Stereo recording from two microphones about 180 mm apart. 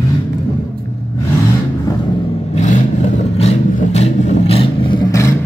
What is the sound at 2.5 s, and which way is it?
Vehicle, 40° left (ahead or behind).